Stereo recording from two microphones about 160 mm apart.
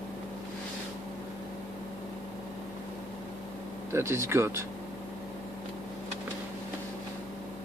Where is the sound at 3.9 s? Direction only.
15° right (ahead or behind).